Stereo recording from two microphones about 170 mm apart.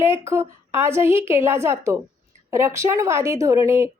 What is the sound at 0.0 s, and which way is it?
A woman's voice, 15° right (ahead or behind).